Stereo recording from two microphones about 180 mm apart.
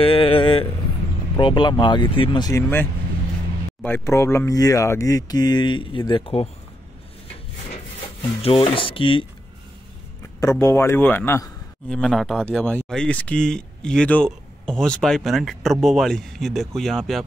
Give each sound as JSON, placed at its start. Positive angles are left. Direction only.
{"t": 0.0, "sound": "vehicle", "side_deg": 30}
{"t": 1.3, "sound": "speech", "side_deg": 25}
{"t": 3.8, "sound": "speech", "side_deg": 15}
{"t": 8.2, "sound": "speech", "side_deg": 30}
{"t": 10.4, "sound": "speech", "side_deg": 15}
{"t": 11.9, "sound": "speech", "side_deg": 0}